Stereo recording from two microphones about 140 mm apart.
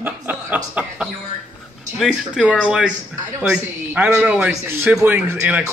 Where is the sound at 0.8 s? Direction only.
10° right (ahead or behind).